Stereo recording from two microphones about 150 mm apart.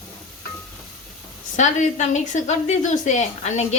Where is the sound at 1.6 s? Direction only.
50° left (ahead or behind).